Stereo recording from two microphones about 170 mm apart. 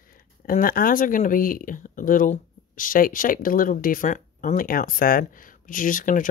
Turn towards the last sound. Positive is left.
turn(degrees=50)  # may be behind; listen again after turning